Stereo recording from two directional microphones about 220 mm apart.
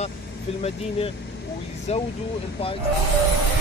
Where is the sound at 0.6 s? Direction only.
25° left (ahead or behind).